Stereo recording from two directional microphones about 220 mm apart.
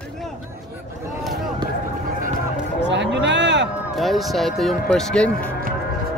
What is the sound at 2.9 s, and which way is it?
Speech, 55° right (ahead or behind).